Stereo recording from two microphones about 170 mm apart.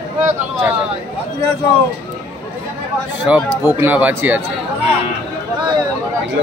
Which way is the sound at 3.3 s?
10° right (ahead or behind).